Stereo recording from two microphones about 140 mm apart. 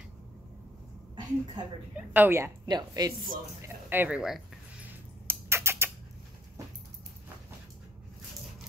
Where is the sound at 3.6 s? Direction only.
15° right (ahead or behind).